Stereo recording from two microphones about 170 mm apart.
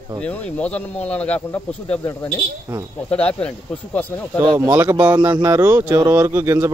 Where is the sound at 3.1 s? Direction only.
5° left (ahead or behind).